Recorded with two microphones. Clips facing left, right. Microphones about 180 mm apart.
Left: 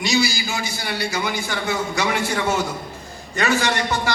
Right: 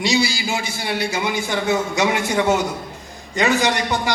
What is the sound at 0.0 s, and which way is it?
A man's voice, 30° right (ahead or behind).